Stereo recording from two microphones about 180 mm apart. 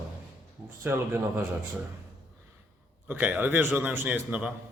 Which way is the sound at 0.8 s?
10° right (ahead or behind).